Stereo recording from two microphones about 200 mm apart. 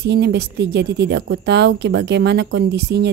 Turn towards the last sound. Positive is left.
turn(degrees=-60)  # may be behind; listen again after turning